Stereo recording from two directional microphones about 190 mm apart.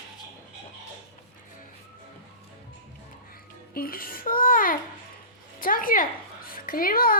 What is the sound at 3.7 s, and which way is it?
Babbling, 50° left (ahead or behind).